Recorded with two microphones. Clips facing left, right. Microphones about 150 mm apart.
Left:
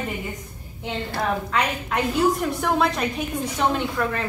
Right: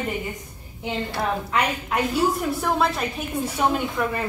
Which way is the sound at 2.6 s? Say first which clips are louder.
Left 2 dB; centre (ahead or behind).